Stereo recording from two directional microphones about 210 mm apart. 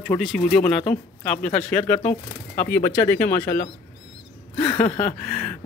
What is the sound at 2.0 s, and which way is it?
Speech, 35° left (ahead or behind).